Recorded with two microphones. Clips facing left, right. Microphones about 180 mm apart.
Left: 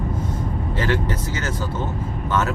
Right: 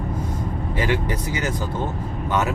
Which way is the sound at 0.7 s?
15° right (ahead or behind).